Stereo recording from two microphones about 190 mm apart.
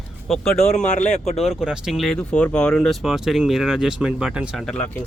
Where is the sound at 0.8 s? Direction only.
40° left (ahead or behind).